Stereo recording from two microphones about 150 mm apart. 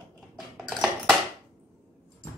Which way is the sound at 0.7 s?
Centre (ahead or behind).